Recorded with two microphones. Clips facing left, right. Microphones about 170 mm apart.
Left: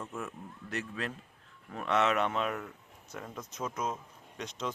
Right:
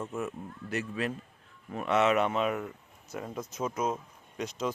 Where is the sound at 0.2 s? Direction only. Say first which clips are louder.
Right 5 dB; 5° right (ahead or behind).